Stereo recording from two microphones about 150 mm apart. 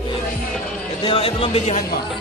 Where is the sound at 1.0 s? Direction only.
40° left (ahead or behind).